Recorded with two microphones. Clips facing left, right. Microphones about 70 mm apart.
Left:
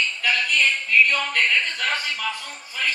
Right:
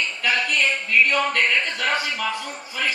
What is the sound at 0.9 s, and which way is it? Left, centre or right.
Speech, centre.